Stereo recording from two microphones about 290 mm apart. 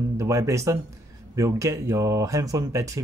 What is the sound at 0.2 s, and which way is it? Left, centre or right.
Speech, centre.